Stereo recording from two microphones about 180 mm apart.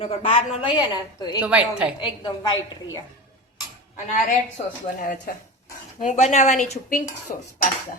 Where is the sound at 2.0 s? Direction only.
25° left (ahead or behind).